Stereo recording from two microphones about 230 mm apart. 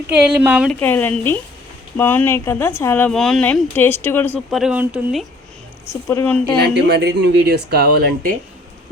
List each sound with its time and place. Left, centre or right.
0.2 s a woman's voice: centre
0.8 s speech: centre
4.6 s a woman's voice: centre
5.9 s speech: centre
6.6 s speech: right